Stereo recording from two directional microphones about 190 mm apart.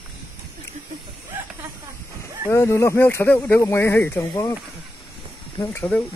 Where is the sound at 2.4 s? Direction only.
15° left (ahead or behind).